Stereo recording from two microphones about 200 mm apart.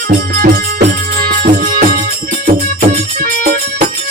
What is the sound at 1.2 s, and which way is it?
Music, 50° right (ahead or behind).